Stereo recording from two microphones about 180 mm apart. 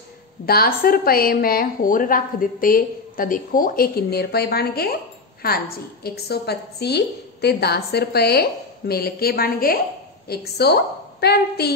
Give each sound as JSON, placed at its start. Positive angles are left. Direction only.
{"t": 0.5, "sound": "a woman's voice", "side_deg": 55}